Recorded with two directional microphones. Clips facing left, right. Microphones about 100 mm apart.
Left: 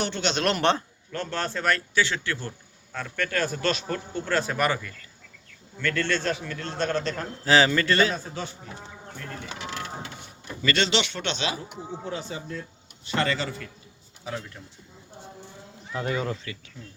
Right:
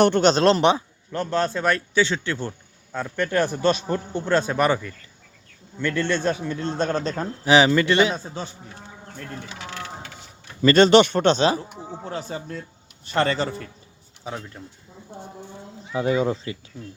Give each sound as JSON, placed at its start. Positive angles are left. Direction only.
{"t": 0.0, "sound": "speech", "side_deg": -50}
{"t": 0.6, "sound": "a man's voice", "side_deg": -15}
{"t": 6.9, "sound": "speech", "side_deg": -35}
{"t": 7.2, "sound": "speech", "side_deg": -15}
{"t": 10.6, "sound": "speech", "side_deg": -40}
{"t": 13.1, "sound": "speech", "side_deg": -40}
{"t": 15.9, "sound": "a man's voice", "side_deg": -15}